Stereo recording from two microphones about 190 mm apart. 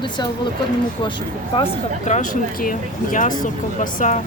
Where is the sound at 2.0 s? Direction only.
40° left (ahead or behind).